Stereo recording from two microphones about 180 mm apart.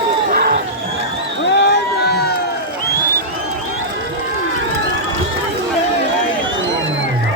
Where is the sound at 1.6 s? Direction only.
65° left (ahead or behind).